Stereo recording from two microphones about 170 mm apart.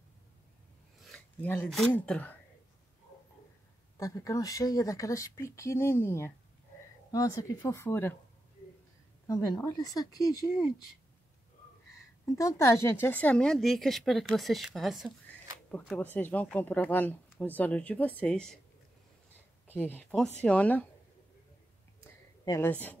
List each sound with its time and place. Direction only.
0.9 s a sound: centre (ahead or behind)
1.9 s speech: 10° left (ahead or behind)
4.0 s speech: 20° left (ahead or behind)
9.3 s speech: 20° left (ahead or behind)
12.3 s a woman's voice: 20° left (ahead or behind); by 15.1 s centre (ahead or behind)
15.7 s speech: 10° left (ahead or behind)
19.7 s speech: 10° left (ahead or behind)
22.0 s a sound: 20° left (ahead or behind)
22.7 s speech: 10° left (ahead or behind)